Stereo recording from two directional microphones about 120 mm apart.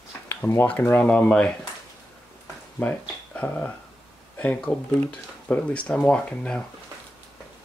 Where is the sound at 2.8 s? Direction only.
10° left (ahead or behind).